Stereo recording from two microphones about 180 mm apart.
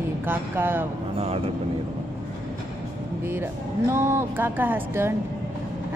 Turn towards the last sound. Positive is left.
turn(degrees=-10)  # may be behind; listen again after turning